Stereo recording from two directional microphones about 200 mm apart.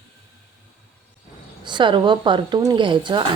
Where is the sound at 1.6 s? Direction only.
20° right (ahead or behind).